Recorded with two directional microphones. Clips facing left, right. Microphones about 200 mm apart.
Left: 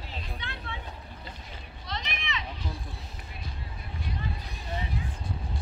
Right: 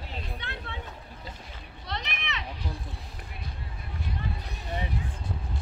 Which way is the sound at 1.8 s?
60° right (ahead or behind).